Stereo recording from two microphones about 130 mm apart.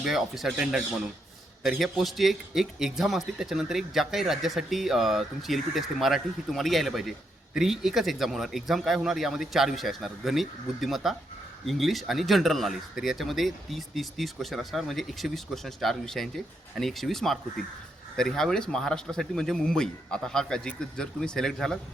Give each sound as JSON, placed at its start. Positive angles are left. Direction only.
{"t": 0.0, "sound": "speech", "side_deg": 0}